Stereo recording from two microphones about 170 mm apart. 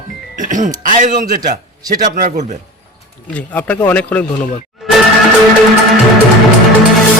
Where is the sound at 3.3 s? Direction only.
10° left (ahead or behind).